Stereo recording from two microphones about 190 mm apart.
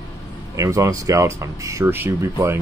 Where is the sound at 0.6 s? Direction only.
15° right (ahead or behind).